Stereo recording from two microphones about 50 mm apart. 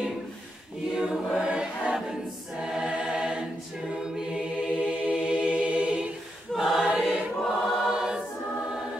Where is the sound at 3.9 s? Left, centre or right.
Centre.